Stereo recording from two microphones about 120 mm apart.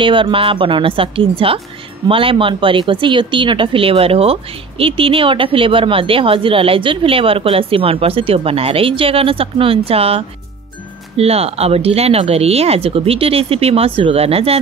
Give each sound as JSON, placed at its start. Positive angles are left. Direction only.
{"t": 0.0, "sound": "speech", "side_deg": -45}